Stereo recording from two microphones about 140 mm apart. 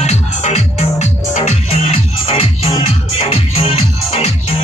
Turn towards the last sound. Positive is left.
turn(degrees=45)  # may be behind; listen again after turning